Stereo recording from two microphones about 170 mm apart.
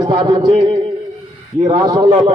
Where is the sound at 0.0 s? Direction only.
30° right (ahead or behind).